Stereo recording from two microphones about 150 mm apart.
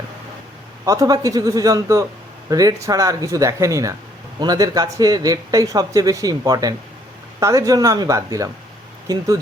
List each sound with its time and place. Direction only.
0.9 s speech: 25° right (ahead or behind)